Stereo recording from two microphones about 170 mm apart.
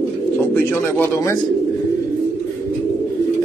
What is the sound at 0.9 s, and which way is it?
Speech, 15° left (ahead or behind).